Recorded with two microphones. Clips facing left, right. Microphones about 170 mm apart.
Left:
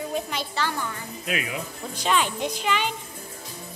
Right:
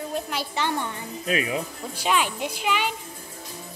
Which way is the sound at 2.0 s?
5° right (ahead or behind).